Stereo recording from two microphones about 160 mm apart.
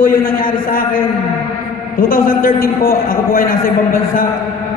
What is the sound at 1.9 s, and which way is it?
A man's voice, 60° left (ahead or behind).